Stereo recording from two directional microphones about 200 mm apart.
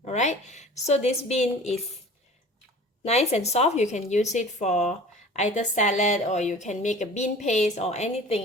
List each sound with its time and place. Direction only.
0.0 s a woman's voice: 35° left (ahead or behind)
3.0 s a woman's voice: 35° left (ahead or behind)